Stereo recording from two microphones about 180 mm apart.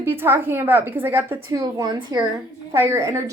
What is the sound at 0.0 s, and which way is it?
A woman's voice, 15° right (ahead or behind).